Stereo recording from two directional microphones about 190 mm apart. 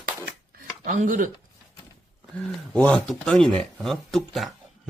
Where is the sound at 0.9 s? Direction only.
45° right (ahead or behind).